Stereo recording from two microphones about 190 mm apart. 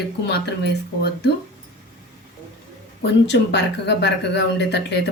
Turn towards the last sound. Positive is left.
turn(degrees=65)  # may be behind; listen again after turning